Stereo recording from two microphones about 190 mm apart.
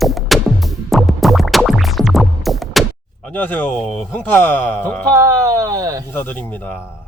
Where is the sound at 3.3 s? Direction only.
10° left (ahead or behind).